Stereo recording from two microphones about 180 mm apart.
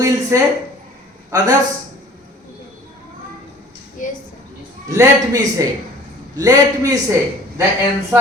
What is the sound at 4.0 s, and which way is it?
Speech, 45° left (ahead or behind).